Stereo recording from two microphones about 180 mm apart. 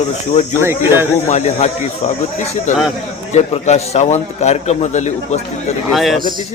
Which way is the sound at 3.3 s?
40° left (ahead or behind).